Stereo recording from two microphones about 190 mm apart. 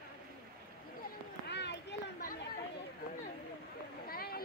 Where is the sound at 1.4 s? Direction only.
65° left (ahead or behind).